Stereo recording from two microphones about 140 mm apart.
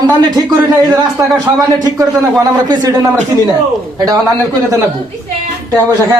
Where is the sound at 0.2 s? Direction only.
30° right (ahead or behind).